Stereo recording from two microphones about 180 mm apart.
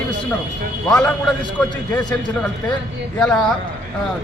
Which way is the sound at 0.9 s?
5° left (ahead or behind).